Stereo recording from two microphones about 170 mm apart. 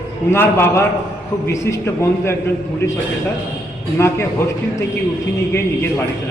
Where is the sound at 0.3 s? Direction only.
15° left (ahead or behind).